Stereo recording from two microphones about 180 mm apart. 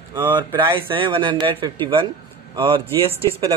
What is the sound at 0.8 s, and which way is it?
Speech, 25° right (ahead or behind).